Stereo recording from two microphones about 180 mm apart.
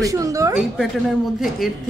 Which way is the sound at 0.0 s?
20° right (ahead or behind).